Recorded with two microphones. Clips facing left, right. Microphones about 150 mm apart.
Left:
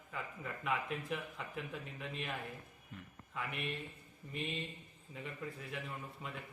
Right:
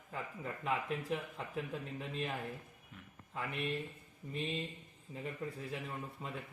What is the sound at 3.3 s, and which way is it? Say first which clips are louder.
A man's voice: right 3 dB; 35° right (ahead or behind).